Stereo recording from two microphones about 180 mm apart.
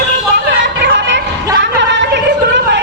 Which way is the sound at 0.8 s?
70° right (ahead or behind).